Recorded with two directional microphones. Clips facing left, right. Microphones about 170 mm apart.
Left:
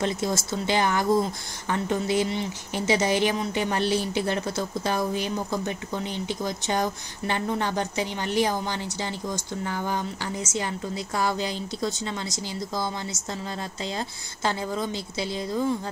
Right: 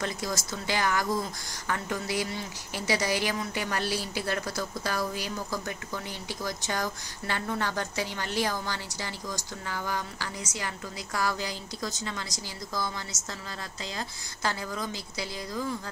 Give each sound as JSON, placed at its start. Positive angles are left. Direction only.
{"t": 0.0, "sound": "speech", "side_deg": 25}
{"t": 13.9, "sound": "speech", "side_deg": 25}